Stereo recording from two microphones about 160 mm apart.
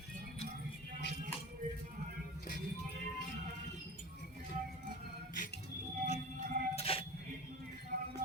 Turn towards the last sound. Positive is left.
turn(degrees=35)  # may be behind; listen again after turning